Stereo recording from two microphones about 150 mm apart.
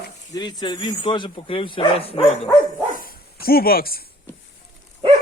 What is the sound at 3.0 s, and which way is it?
Dog, 80° left.